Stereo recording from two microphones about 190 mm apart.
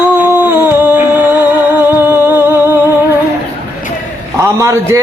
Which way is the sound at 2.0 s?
10° right (ahead or behind).